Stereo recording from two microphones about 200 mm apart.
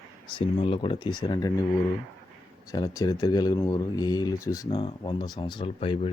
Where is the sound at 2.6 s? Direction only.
20° left (ahead or behind).